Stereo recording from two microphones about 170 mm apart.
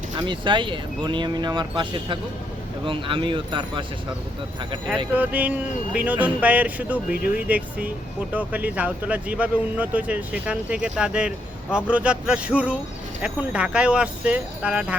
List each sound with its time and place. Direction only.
0.2 s speech: 30° right (ahead or behind)
5.1 s speech: 10° right (ahead or behind)